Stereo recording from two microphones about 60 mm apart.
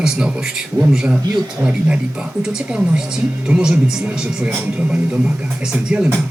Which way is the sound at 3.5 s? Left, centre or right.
Centre.